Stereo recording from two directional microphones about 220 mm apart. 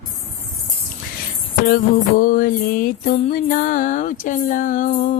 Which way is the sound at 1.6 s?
40° left (ahead or behind).